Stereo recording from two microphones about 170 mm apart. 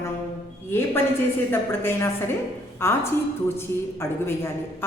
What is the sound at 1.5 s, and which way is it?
A woman's voice, 15° left (ahead or behind).